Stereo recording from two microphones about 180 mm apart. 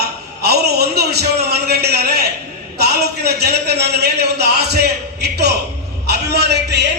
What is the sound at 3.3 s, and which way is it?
A man's voice, 65° right (ahead or behind).